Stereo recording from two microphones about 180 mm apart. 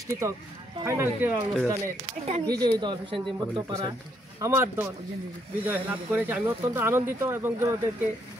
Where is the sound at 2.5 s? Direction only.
25° right (ahead or behind).